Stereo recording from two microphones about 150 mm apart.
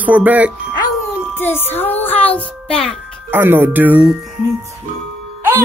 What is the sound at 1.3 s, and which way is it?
Child singing, 15° left (ahead or behind).